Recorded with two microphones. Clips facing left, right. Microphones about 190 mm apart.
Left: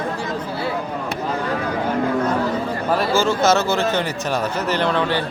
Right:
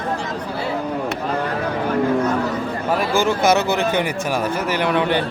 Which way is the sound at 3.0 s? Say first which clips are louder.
Even; 15° right (ahead or behind).